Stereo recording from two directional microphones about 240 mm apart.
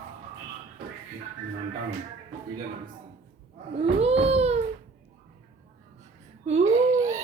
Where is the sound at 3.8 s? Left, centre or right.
Right.